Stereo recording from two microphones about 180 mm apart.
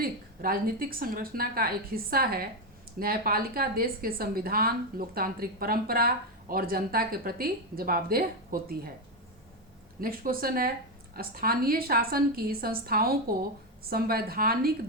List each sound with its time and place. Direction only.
0.0 s a woman's voice: 55° right (ahead or behind)
10.0 s a woman's voice: 55° right (ahead or behind)